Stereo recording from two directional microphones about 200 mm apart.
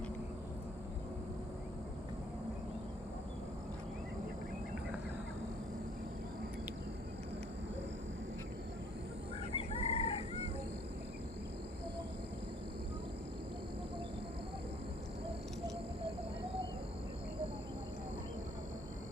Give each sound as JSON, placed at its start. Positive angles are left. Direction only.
{"t": 9.6, "sound": "chicken", "side_deg": 30}